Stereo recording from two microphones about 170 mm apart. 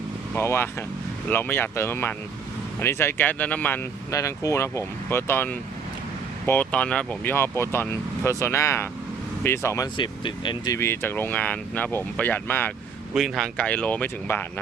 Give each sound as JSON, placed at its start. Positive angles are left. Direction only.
{"t": 0.3, "sound": "speech", "side_deg": 15}
{"t": 10.8, "sound": "speech", "side_deg": 15}
{"t": 13.1, "sound": "speech", "side_deg": 0}